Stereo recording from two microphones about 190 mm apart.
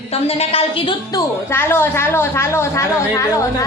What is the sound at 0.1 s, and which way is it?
A woman's voice, 30° left (ahead or behind).